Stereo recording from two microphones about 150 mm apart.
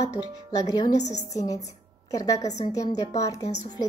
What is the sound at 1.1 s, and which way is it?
A woman's voice, 25° left (ahead or behind).